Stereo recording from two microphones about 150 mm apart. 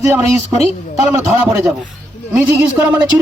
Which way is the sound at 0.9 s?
5° right (ahead or behind).